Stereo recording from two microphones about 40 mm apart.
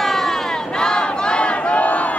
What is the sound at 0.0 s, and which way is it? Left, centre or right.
Crowd, centre.